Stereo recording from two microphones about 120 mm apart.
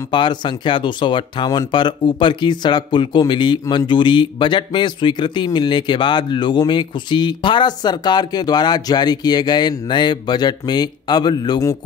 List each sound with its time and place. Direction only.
0.1 s speech: 40° left (ahead or behind)